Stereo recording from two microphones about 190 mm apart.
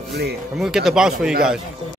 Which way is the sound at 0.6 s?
Centre (ahead or behind).